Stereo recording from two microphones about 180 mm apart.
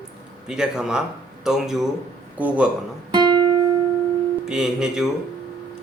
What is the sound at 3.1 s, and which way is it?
Music, 25° right (ahead or behind).